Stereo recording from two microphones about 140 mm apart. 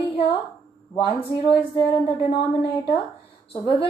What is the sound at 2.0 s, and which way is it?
Speech, 40° left (ahead or behind).